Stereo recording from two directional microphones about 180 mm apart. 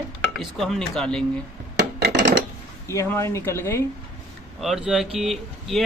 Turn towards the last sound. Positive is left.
turn(degrees=0)  # may be behind; listen again after turning